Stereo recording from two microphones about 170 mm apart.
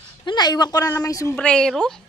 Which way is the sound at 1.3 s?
5° left (ahead or behind).